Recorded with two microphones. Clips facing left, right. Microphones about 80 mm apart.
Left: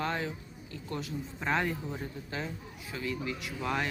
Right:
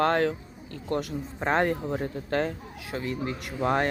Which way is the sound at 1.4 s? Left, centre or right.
Right.